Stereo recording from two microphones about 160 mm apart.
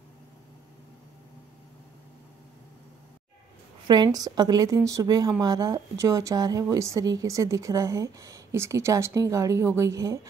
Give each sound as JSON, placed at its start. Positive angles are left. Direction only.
{"t": 3.8, "sound": "speech", "side_deg": -25}